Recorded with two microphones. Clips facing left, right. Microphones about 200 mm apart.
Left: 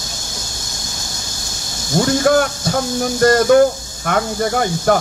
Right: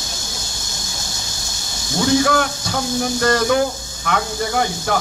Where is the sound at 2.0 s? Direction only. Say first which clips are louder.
Left 2 dB; 45° left (ahead or behind).